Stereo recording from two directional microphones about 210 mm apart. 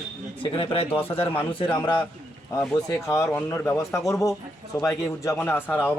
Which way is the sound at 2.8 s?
15° left (ahead or behind).